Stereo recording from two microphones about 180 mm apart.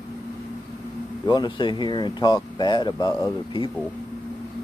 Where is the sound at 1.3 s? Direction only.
25° left (ahead or behind).